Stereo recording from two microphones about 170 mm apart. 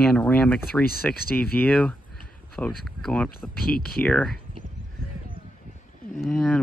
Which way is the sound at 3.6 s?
60° left (ahead or behind).